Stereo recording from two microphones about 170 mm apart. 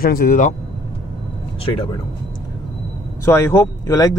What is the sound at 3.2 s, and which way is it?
Speech, 15° left (ahead or behind).